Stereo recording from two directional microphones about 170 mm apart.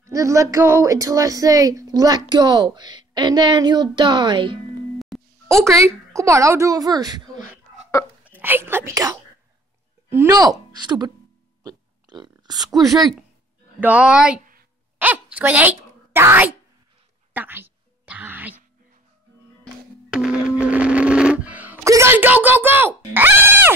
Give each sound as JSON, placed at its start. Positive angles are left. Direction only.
{"t": 0.0, "sound": "speech", "side_deg": -20}
{"t": 4.9, "sound": "music", "side_deg": 0}
{"t": 5.6, "sound": "a woman's voice", "side_deg": -15}
{"t": 11.6, "sound": "burping", "side_deg": -25}
{"t": 12.7, "sound": "speech", "side_deg": 0}
{"t": 17.3, "sound": "a sound", "side_deg": -10}
{"t": 19.6, "sound": "music", "side_deg": -5}
{"t": 23.1, "sound": "speech", "side_deg": -10}